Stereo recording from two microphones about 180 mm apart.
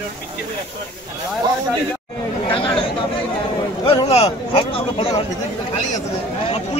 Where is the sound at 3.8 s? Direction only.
30° left (ahead or behind).